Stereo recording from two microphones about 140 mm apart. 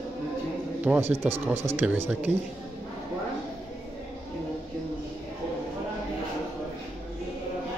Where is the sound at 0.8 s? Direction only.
15° right (ahead or behind).